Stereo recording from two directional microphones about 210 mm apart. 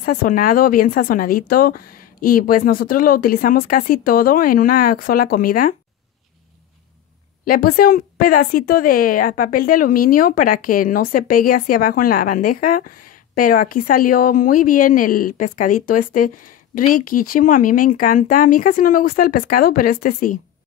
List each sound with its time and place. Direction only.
0.0 s speech: 45° left (ahead or behind)
7.4 s speech: 45° left (ahead or behind)